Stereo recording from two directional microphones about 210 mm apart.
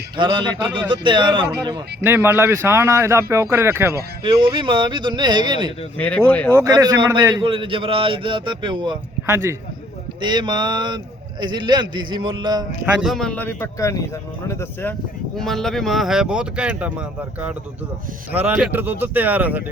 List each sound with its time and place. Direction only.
0.2 s speech: 25° right (ahead or behind)
2.0 s speech: 10° right (ahead or behind)
4.2 s speech: 25° right (ahead or behind)
6.0 s speech: 5° left (ahead or behind)
6.5 s speech: 15° right (ahead or behind)
12.8 s speech: centre (ahead or behind)